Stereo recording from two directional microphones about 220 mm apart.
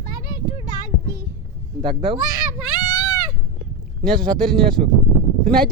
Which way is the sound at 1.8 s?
25° right (ahead or behind).